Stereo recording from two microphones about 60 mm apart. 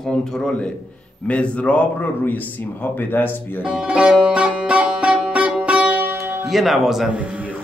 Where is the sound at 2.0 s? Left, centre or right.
Left.